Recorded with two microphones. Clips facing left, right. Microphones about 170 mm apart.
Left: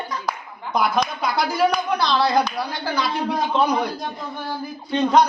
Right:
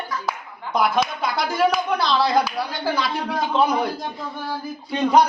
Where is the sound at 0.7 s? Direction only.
Centre (ahead or behind).